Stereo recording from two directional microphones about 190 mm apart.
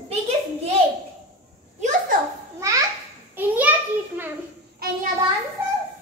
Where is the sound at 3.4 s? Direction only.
10° right (ahead or behind).